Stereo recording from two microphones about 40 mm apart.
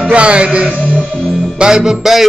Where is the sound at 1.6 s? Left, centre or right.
Centre.